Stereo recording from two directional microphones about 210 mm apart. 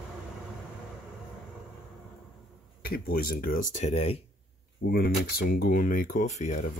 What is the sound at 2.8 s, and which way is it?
Speech, 45° left (ahead or behind).